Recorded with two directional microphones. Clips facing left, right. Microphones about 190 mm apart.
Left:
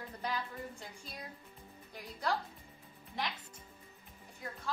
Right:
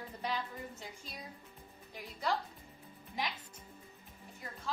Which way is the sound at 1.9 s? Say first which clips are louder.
Even; centre (ahead or behind).